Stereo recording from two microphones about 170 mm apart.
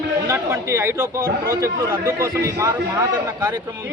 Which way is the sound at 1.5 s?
15° right (ahead or behind).